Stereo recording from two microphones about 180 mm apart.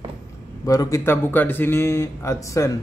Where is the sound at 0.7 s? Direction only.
20° left (ahead or behind).